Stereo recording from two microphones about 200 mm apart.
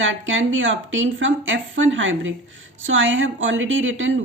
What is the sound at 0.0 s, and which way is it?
A woman's voice, 70° right (ahead or behind).